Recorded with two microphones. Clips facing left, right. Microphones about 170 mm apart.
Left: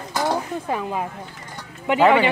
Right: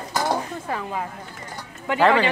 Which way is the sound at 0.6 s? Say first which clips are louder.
Left 3 dB; 20° left (ahead or behind).